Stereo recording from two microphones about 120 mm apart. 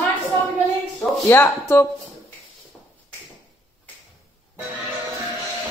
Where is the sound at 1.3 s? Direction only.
20° left (ahead or behind).